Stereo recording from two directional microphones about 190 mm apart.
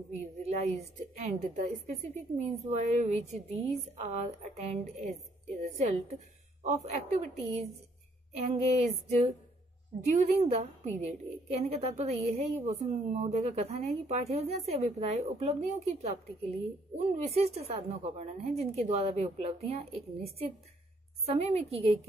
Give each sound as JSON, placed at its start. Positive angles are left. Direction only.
{"t": 0.4, "sound": "a woman's voice", "side_deg": -35}
{"t": 8.7, "sound": "a woman's voice", "side_deg": -35}
{"t": 21.4, "sound": "a woman's voice", "side_deg": -35}